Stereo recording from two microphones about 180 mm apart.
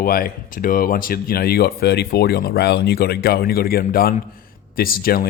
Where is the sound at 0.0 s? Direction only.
55° left (ahead or behind).